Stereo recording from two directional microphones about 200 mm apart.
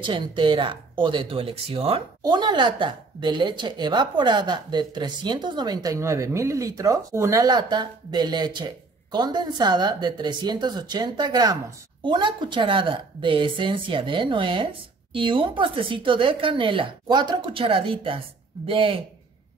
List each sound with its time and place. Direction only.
0.0 s speech: 25° right (ahead or behind)